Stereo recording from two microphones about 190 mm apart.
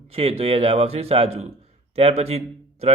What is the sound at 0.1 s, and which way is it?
Speech, 30° right (ahead or behind).